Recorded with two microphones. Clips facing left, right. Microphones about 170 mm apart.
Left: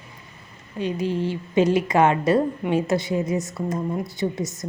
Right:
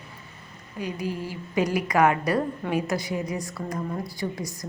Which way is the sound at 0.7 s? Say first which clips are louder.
Left 6 dB; 25° left (ahead or behind).